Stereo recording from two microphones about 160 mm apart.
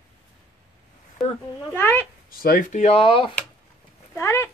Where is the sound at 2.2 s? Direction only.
65° left (ahead or behind); by 3.4 s 35° left (ahead or behind).